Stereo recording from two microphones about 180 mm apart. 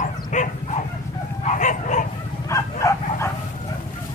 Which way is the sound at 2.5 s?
15° left (ahead or behind).